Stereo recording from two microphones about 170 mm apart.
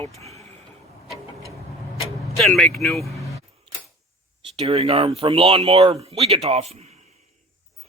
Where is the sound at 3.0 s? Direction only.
20° left (ahead or behind).